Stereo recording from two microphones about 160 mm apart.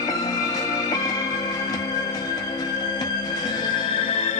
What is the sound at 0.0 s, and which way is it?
Music, 20° left (ahead or behind).